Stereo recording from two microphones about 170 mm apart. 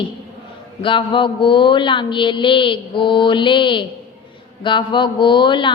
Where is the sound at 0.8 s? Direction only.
30° left (ahead or behind).